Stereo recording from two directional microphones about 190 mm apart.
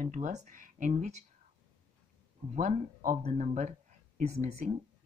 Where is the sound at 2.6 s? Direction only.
40° right (ahead or behind).